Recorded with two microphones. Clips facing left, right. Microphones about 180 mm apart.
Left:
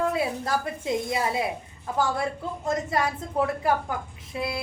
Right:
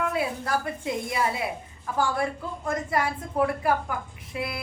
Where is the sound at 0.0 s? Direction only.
25° left (ahead or behind).